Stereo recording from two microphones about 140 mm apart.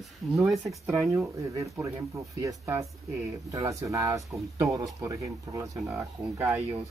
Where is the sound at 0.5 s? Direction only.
Centre (ahead or behind).